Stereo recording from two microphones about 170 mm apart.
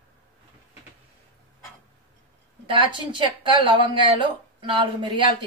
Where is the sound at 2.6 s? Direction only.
30° right (ahead or behind).